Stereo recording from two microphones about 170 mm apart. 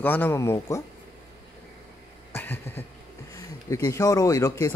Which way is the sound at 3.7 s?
20° left (ahead or behind).